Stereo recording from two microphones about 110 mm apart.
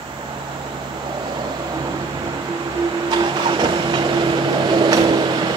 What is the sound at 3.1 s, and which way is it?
Printer, 55° right (ahead or behind).